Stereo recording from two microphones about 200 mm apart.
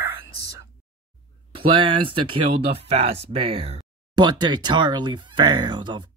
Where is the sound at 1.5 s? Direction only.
25° right (ahead or behind).